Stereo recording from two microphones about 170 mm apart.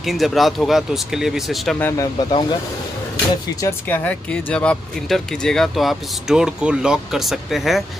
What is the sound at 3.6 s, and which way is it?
Speech, 15° left (ahead or behind).